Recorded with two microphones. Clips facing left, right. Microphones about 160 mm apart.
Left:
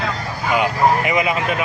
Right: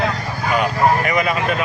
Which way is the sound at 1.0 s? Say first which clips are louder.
Even; 20° left (ahead or behind).